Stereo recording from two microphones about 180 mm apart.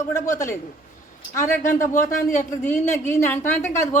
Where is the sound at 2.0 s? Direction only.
45° left (ahead or behind).